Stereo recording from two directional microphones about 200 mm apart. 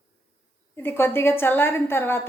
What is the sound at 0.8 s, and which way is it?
A woman's voice, 10° left (ahead or behind).